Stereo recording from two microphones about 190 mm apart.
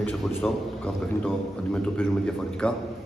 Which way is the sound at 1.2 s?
10° left (ahead or behind).